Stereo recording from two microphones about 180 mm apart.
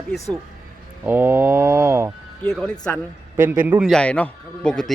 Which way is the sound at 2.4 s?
5° left (ahead or behind).